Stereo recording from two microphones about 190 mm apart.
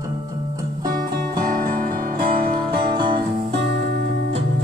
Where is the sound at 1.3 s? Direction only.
45° right (ahead or behind).